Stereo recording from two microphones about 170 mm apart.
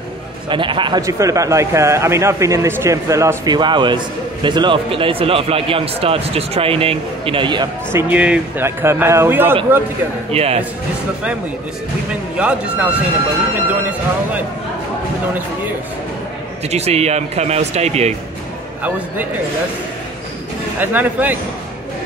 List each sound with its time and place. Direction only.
0.5 s speech: 30° right (ahead or behind)
7.9 s speech: 10° right (ahead or behind)
10.3 s speech: 35° right (ahead or behind)
12.4 s speech: 5° right (ahead or behind)
16.6 s speech: 40° right (ahead or behind)
18.8 s speech: 10° right (ahead or behind)
20.8 s speech: 10° right (ahead or behind)